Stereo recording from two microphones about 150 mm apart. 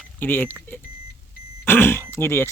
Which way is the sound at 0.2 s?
10° left (ahead or behind).